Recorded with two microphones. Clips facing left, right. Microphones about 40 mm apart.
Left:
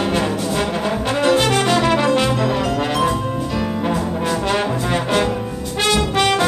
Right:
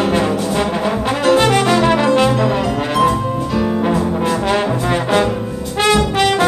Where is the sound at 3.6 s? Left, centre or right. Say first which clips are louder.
Right 6 dB; centre.